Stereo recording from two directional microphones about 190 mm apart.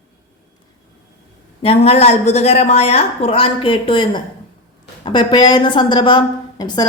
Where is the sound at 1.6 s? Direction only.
30° left (ahead or behind).